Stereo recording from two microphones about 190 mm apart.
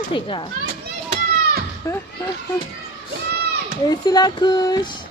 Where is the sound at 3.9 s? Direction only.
20° left (ahead or behind).